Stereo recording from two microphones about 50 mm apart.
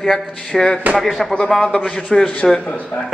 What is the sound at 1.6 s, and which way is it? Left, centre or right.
A man's voice, centre.